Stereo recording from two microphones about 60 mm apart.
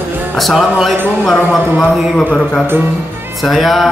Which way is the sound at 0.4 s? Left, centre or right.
Centre.